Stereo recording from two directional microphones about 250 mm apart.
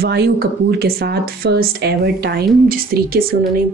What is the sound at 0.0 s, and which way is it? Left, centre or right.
A woman's voice, right.